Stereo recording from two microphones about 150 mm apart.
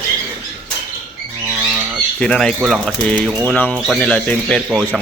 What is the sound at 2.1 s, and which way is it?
Speech, 5° left (ahead or behind).